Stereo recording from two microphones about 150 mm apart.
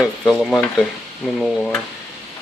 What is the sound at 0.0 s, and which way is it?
Stir, 5° left (ahead or behind).